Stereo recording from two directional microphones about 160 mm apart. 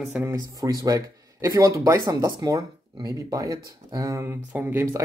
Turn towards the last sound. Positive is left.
turn(degrees=-15)  # may be behind; listen again after turning